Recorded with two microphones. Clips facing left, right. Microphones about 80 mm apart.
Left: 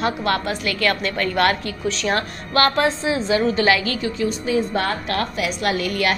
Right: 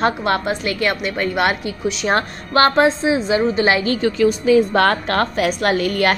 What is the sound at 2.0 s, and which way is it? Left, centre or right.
A woman's voice, right.